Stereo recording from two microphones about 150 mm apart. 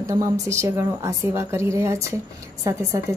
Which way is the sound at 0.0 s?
20° right (ahead or behind).